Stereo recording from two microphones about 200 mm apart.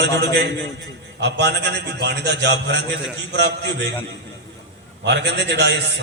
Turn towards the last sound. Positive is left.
turn(degrees=-60)  # may be behind; listen again after turning